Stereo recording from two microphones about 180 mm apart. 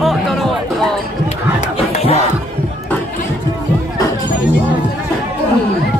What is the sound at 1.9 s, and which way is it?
Music, 35° left (ahead or behind).